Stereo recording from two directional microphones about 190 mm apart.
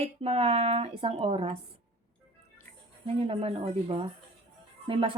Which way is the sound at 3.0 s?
30° right (ahead or behind).